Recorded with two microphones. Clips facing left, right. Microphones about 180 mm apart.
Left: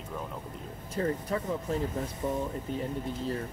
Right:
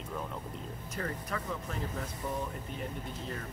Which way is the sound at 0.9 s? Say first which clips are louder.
Left 8 dB; 30° left (ahead or behind).